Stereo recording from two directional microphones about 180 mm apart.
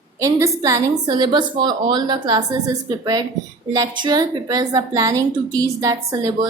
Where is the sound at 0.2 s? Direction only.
15° right (ahead or behind).